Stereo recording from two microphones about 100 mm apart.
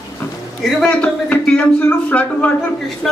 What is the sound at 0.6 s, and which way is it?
Speech, 10° left (ahead or behind).